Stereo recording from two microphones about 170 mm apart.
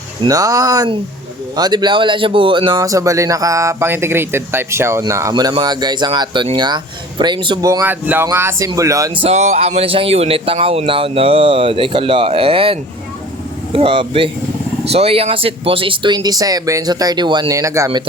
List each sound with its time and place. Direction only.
0.2 s speech: 20° right (ahead or behind)
9.2 s speech: 40° right (ahead or behind); by 18.0 s 20° right (ahead or behind)